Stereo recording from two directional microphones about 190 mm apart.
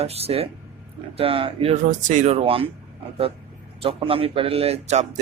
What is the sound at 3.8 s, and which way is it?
Speech, 30° right (ahead or behind).